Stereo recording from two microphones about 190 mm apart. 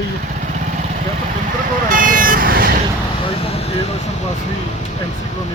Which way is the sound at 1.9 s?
45° right (ahead or behind).